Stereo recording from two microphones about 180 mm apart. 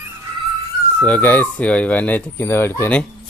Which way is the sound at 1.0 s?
10° left (ahead or behind).